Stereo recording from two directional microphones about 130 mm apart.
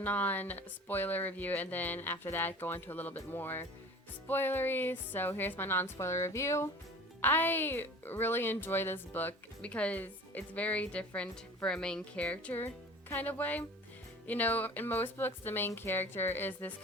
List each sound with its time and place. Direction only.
0.0 s a woman's voice: 15° left (ahead or behind)